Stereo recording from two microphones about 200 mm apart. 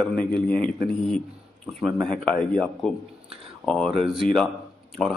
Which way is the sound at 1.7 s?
Centre (ahead or behind).